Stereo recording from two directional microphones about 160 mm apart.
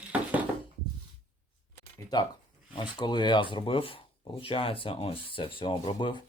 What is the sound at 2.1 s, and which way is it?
Speech, 25° left (ahead or behind).